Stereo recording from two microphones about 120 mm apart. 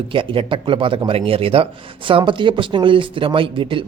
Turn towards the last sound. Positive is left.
turn(degrees=-45)  # may be behind; listen again after turning